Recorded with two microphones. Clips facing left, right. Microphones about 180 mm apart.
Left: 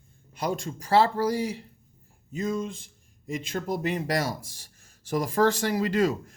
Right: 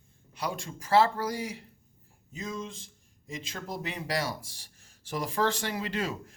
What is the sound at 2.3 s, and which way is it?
Speech, 55° left (ahead or behind).